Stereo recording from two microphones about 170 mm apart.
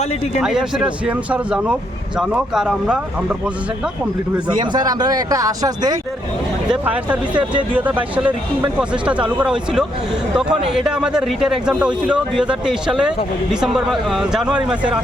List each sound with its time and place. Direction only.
0.4 s a man's voice: 5° right (ahead or behind)
4.4 s speech: 25° right (ahead or behind)
6.7 s a man's voice: 10° right (ahead or behind)